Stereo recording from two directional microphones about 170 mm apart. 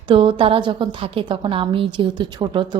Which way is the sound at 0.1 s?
30° right (ahead or behind).